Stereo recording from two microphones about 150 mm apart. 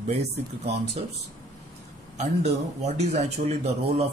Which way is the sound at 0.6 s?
40° right (ahead or behind).